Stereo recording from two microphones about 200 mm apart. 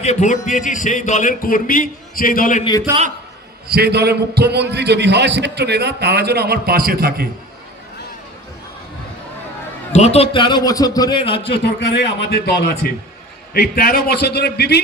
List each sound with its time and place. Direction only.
0.0 s a man's voice: 35° left (ahead or behind)
3.7 s a man's voice: 55° right (ahead or behind)
9.9 s a man's voice: 35° left (ahead or behind)
11.4 s a man's voice: 55° left (ahead or behind)